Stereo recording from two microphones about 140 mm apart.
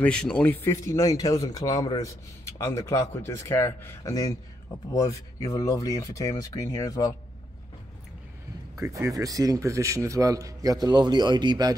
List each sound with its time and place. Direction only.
0.0 s speech: 5° left (ahead or behind); by 7.2 s 25° left (ahead or behind)
8.7 s a man's voice: 20° right (ahead or behind)